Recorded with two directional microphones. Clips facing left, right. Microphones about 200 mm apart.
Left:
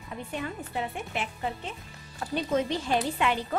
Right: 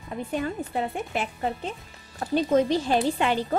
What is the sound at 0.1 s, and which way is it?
A woman's voice, 40° right (ahead or behind).